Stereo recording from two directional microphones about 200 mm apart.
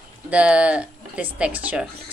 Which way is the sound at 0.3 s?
5° right (ahead or behind).